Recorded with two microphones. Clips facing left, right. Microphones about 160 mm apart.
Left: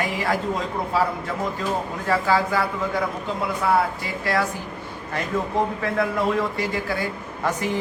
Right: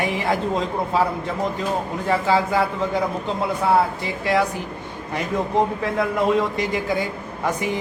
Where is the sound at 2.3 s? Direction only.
20° right (ahead or behind).